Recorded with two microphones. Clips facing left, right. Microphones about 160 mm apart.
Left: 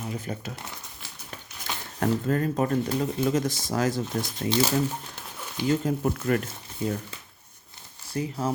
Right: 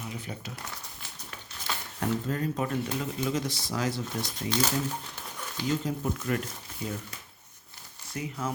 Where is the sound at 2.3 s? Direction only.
50° left (ahead or behind).